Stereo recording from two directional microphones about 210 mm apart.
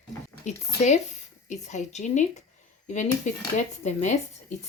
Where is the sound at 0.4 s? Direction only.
35° left (ahead or behind).